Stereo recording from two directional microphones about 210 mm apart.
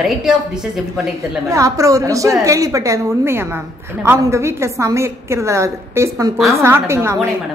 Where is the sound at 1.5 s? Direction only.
15° right (ahead or behind).